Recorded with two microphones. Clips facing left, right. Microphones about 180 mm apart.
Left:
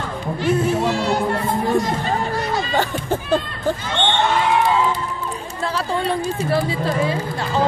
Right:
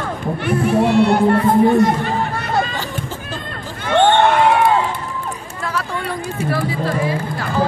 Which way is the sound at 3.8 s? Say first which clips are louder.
Right 11 dB; 50° right (ahead or behind).